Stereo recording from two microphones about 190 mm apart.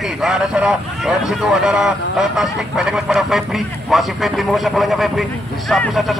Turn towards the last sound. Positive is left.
turn(degrees=0)  # may be behind; listen again after turning